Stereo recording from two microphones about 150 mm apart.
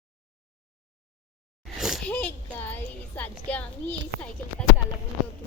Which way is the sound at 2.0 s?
10° left (ahead or behind).